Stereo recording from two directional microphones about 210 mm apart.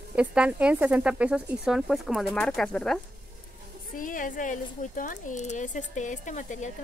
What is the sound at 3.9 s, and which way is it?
Speech, 40° left (ahead or behind).